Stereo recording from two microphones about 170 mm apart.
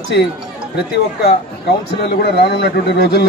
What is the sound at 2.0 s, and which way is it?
Speech, 65° left (ahead or behind).